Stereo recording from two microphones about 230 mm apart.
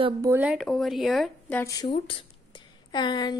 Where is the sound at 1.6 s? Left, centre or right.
Centre.